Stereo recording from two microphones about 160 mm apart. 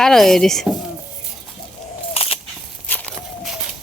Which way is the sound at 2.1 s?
40° left (ahead or behind).